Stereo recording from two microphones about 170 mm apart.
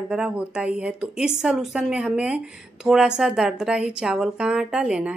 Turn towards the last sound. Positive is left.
turn(degrees=-5)  # may be behind; listen again after turning